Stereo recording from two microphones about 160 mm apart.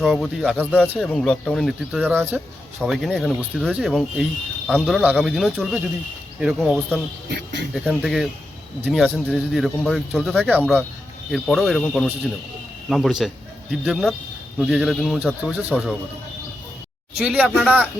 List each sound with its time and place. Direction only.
0.0 s speech: centre (ahead or behind)
2.0 s speech: 10° right (ahead or behind)
7.3 s speech: 90° right
7.7 s speech: centre (ahead or behind)
10.5 s speech: 10° right (ahead or behind)
11.3 s speech: centre (ahead or behind)
17.2 s speech: 5° right (ahead or behind)